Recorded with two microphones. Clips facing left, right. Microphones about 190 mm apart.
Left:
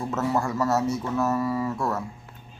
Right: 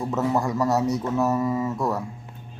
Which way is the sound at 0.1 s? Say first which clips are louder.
Right 2 dB; 15° right (ahead or behind).